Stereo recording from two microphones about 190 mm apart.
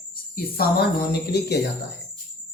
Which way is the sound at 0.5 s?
55° left (ahead or behind).